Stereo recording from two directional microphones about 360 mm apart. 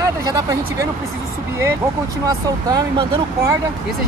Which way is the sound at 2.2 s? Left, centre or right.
Centre.